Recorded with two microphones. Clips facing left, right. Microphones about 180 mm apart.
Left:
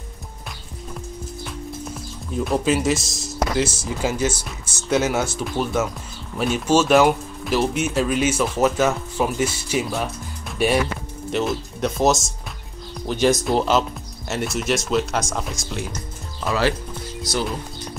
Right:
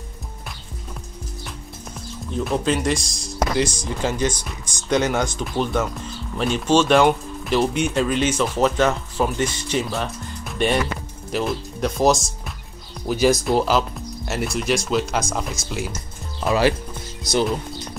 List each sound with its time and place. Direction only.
2.3 s speech: 5° left (ahead or behind)
16.4 s speech: 15° right (ahead or behind)